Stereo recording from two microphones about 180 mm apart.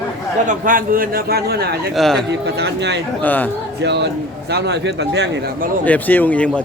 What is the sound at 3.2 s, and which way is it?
Speech, 10° left (ahead or behind).